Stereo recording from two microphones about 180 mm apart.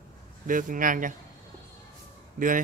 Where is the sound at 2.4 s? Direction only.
50° right (ahead or behind).